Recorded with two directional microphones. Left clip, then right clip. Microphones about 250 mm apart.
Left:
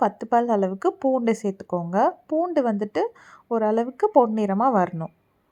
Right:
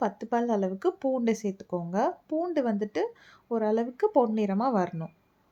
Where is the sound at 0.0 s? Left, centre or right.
Centre.